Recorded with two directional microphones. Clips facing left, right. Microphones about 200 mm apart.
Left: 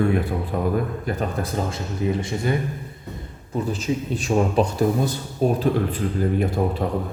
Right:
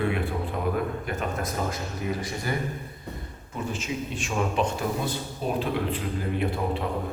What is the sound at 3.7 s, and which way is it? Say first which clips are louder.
A man's voice: left 6 dB; 35° left (ahead or behind).